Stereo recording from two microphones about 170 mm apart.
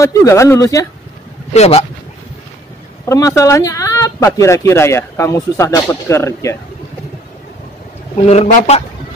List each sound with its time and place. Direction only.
0.0 s speech: 20° left (ahead or behind)
1.5 s speech: 40° left (ahead or behind)
3.1 s speech: 20° left (ahead or behind)
8.3 s speech: 45° left (ahead or behind)